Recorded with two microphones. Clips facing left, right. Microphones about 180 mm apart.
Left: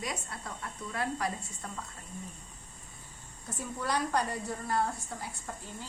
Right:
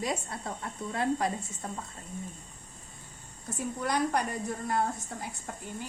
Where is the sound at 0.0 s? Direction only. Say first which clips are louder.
Right 5 dB; 25° right (ahead or behind).